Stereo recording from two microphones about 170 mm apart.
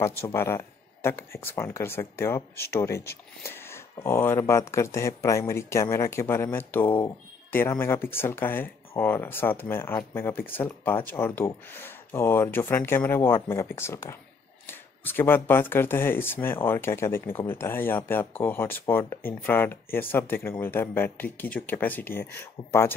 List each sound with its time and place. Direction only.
0.0 s speech: 15° left (ahead or behind)